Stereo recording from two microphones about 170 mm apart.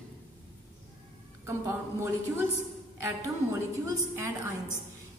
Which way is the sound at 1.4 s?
15° right (ahead or behind).